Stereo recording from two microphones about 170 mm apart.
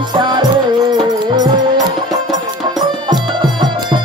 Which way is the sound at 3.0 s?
25° right (ahead or behind).